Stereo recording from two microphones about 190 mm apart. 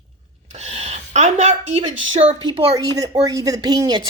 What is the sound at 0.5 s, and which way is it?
Speech, 35° right (ahead or behind).